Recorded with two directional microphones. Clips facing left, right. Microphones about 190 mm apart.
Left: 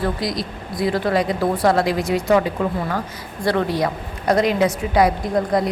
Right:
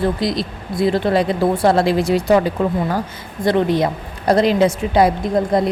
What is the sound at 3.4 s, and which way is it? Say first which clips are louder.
A woman's voice: right 4 dB; 20° right (ahead or behind).